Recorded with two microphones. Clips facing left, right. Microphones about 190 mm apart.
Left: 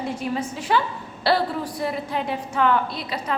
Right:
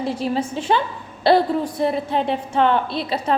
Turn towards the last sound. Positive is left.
turn(degrees=-30)  # may be behind; listen again after turning